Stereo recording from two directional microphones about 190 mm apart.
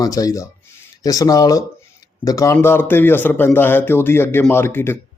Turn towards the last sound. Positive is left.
turn(degrees=10)  # may be behind; listen again after turning